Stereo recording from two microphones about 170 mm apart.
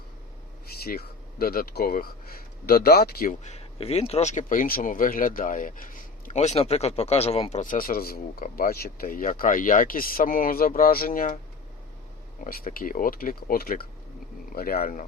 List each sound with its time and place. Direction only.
0.7 s speech: 65° left (ahead or behind)
3.4 s speech: 40° left (ahead or behind)
7.6 s speech: 55° left (ahead or behind)
12.5 s speech: 55° left (ahead or behind)